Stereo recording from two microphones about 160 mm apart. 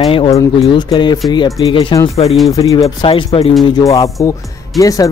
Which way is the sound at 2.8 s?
35° left (ahead or behind).